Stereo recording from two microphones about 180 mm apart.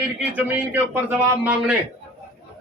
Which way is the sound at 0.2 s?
10° right (ahead or behind).